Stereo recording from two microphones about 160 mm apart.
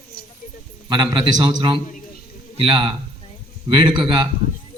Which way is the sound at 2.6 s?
30° right (ahead or behind).